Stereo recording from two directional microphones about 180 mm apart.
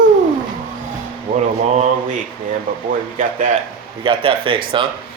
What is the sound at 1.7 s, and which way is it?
Speech, 40° right (ahead or behind).